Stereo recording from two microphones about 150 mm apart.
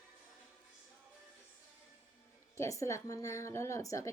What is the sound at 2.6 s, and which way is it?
A woman's voice, 20° left (ahead or behind).